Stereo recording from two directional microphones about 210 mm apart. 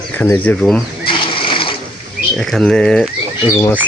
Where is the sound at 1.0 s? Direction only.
25° left (ahead or behind).